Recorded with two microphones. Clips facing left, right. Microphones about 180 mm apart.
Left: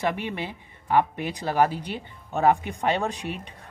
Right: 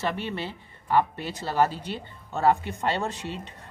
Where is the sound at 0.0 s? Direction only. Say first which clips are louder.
Left 2 dB; 15° left (ahead or behind).